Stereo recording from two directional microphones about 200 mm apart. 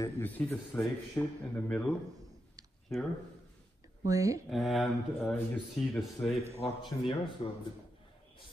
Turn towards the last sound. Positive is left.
turn(degrees=25)  # may be behind; listen again after turning